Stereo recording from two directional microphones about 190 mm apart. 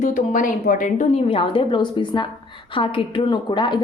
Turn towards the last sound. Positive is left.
turn(degrees=25)  # may be behind; listen again after turning